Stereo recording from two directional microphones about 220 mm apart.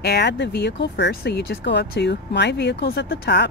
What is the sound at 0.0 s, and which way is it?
Speech, 50° left (ahead or behind).